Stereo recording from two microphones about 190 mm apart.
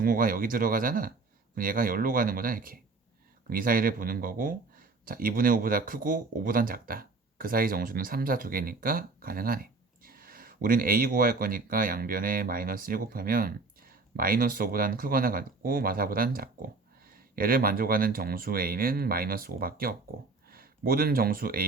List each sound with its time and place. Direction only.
0.0 s speech: 50° right (ahead or behind)